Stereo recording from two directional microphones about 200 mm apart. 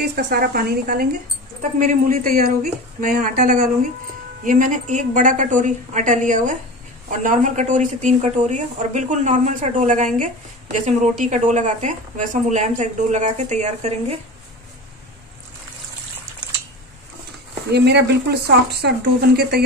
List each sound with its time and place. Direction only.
0.0 s a woman's voice: 50° right (ahead or behind); by 14.1 s 35° right (ahead or behind)
17.6 s speech: 55° right (ahead or behind)